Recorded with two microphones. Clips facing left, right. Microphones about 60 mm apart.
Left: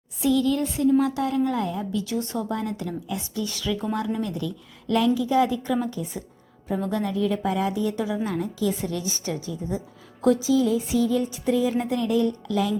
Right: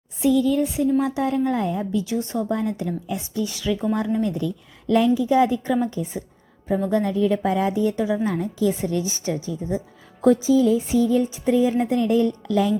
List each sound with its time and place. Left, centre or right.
0.2 s a woman's voice: right
7.1 s a woman's voice: right
10.2 s a sound: right